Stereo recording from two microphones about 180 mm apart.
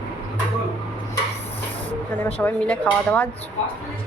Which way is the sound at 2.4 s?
10° left (ahead or behind).